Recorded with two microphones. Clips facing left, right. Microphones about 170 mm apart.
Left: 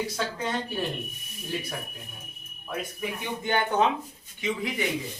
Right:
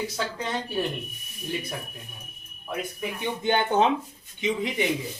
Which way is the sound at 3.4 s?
25° right (ahead or behind).